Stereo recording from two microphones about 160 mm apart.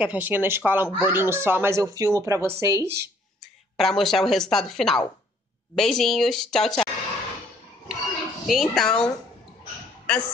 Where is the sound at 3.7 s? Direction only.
Centre (ahead or behind).